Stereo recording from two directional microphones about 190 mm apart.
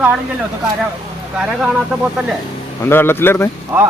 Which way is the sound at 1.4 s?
5° right (ahead or behind).